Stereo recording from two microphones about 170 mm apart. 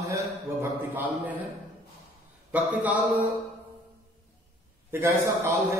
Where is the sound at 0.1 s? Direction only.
15° right (ahead or behind).